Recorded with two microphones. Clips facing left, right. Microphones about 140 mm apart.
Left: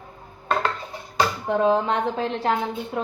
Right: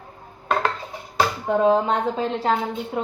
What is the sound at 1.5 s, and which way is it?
Speech, 20° right (ahead or behind).